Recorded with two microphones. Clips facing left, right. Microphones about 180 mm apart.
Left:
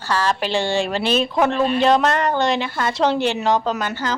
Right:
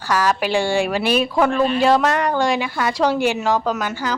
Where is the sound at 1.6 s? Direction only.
5° right (ahead or behind).